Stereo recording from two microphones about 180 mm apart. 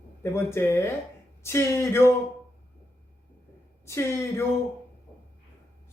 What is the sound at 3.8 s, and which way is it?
Speech, 15° left (ahead or behind).